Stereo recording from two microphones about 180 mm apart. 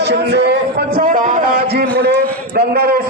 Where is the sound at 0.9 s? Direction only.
50° right (ahead or behind).